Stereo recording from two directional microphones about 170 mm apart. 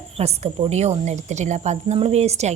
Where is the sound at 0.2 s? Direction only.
40° right (ahead or behind).